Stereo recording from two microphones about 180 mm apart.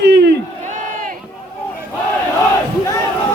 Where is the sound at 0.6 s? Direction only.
45° right (ahead or behind).